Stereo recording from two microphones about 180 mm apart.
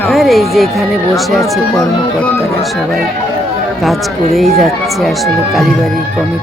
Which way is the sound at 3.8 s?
Centre (ahead or behind).